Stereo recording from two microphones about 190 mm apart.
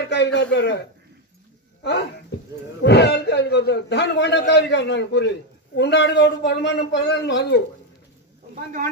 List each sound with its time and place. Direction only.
0.0 s a man's voice: 60° left (ahead or behind)
2.8 s a man's voice: 65° left (ahead or behind)